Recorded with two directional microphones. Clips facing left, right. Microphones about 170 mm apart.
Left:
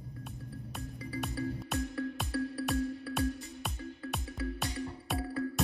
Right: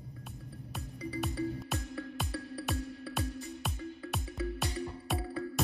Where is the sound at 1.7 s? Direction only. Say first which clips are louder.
Left 4 dB; centre (ahead or behind).